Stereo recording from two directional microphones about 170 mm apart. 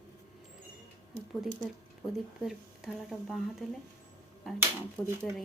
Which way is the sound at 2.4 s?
Centre (ahead or behind).